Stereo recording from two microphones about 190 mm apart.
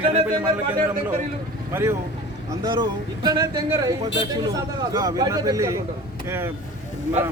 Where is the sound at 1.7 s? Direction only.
15° right (ahead or behind).